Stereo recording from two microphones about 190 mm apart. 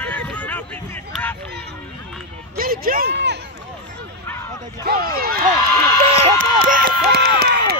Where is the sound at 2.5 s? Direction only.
50° right (ahead or behind).